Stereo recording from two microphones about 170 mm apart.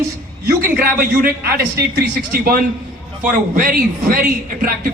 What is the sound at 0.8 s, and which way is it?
Speech, 60° right (ahead or behind).